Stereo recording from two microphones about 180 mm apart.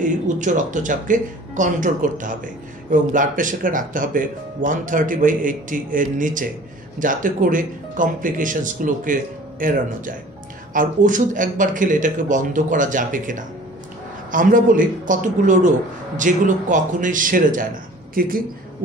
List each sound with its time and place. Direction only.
0.0 s speech: 45° right (ahead or behind)